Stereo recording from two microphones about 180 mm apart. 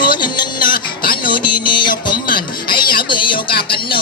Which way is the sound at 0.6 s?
55° left (ahead or behind).